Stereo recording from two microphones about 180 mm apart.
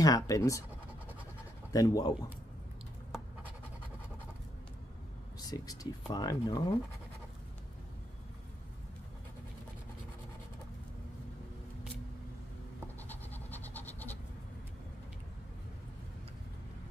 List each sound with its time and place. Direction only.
0.0 s speech: 20° left (ahead or behind)
1.7 s speech: 20° left (ahead or behind)
5.4 s speech: 20° left (ahead or behind)
12.8 s scratch: 10° left (ahead or behind)